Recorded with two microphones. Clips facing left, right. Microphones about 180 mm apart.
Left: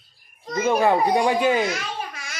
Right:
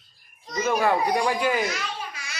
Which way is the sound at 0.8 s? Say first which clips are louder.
Left 4 dB; 25° left (ahead or behind).